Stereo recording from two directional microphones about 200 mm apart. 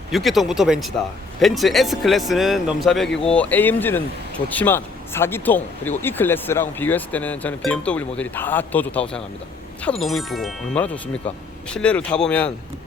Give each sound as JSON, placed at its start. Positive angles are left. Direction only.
{"t": 0.1, "sound": "speech", "side_deg": 0}